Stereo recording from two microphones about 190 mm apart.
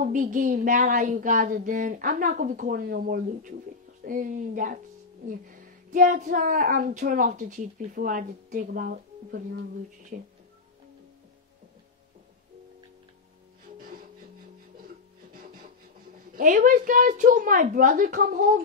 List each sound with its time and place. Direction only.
0.0 s speech: 45° right (ahead or behind)
13.7 s music: 50° right (ahead or behind)
16.3 s speech: 45° right (ahead or behind)